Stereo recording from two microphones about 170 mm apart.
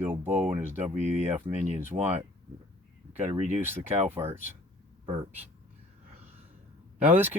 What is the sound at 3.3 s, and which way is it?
Speech, 40° right (ahead or behind).